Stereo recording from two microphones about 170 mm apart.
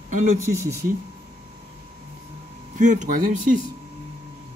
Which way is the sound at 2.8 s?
45° right (ahead or behind).